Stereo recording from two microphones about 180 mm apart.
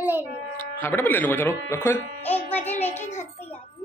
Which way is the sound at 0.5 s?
10° left (ahead or behind).